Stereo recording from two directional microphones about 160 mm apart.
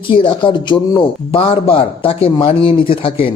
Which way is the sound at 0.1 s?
30° left (ahead or behind).